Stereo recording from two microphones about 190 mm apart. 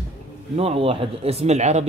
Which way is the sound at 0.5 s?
30° right (ahead or behind).